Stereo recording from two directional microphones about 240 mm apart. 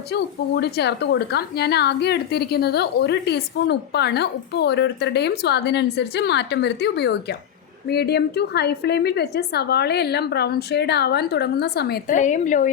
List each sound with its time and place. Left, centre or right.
0.1 s a woman's voice: left